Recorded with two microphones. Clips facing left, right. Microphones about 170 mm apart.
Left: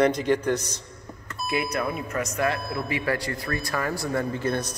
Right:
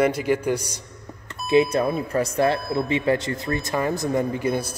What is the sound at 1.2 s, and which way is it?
Speech, 25° right (ahead or behind).